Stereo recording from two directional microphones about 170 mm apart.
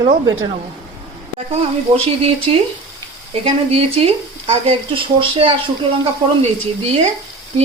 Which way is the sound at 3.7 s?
35° right (ahead or behind).